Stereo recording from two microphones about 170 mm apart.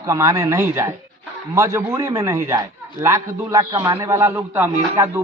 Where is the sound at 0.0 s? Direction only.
20° right (ahead or behind).